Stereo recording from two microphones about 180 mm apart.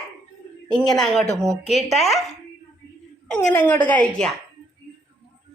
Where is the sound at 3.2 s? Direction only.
5° left (ahead or behind).